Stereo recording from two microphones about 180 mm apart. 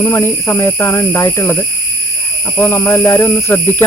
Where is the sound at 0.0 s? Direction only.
15° left (ahead or behind).